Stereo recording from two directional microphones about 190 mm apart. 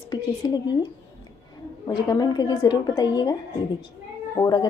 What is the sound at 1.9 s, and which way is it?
A woman's voice, 20° left (ahead or behind).